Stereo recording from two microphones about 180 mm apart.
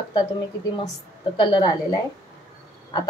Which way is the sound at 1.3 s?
25° left (ahead or behind).